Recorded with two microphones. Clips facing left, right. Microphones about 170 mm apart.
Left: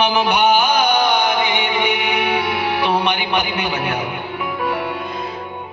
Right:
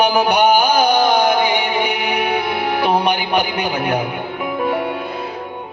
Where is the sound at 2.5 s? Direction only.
50° right (ahead or behind).